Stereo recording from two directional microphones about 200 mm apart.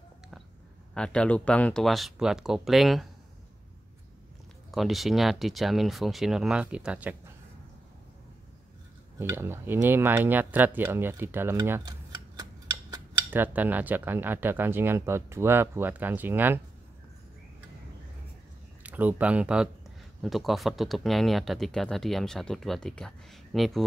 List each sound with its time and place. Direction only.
0.9 s speech: 5° left (ahead or behind)
4.6 s speech: centre (ahead or behind)
9.2 s speech: 10° right (ahead or behind)
18.8 s speech: 5° right (ahead or behind)